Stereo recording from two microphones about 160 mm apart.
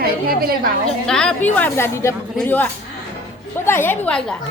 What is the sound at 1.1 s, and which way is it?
A woman's voice, 5° left (ahead or behind).